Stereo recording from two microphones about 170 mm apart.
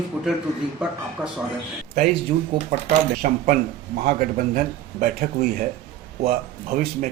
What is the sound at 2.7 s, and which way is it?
Speech, 55° right (ahead or behind).